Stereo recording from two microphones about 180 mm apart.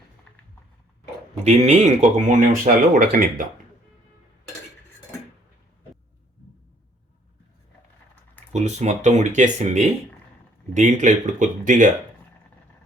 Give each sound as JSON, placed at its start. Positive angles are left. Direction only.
{"t": 1.5, "sound": "speech", "side_deg": -40}
{"t": 8.5, "sound": "speech", "side_deg": -40}